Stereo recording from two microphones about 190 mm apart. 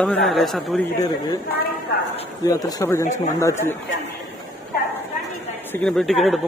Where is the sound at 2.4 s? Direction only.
20° left (ahead or behind).